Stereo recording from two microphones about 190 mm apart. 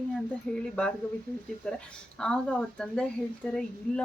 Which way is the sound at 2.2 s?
5° left (ahead or behind).